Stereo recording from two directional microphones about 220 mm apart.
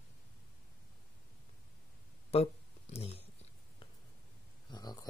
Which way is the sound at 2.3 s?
25° left (ahead or behind).